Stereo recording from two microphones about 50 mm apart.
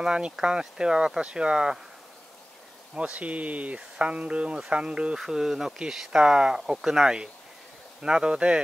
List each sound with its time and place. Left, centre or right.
0.0 s speech: centre
2.9 s speech: right
5.2 s speech: centre